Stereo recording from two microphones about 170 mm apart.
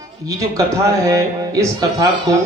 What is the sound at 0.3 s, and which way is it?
A man's voice, 20° right (ahead or behind).